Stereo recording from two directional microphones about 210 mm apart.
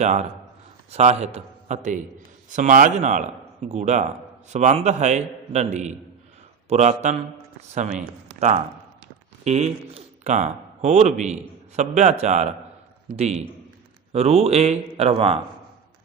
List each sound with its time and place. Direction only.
0.0 s a man's voice: 35° right (ahead or behind)